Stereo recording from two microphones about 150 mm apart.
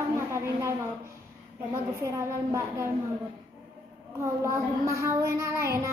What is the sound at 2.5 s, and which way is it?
Child singing, 20° right (ahead or behind).